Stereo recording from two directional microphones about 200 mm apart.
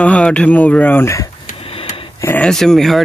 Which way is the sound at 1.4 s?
30° left (ahead or behind).